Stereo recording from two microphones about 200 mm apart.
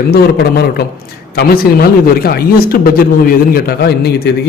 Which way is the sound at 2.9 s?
45° left (ahead or behind).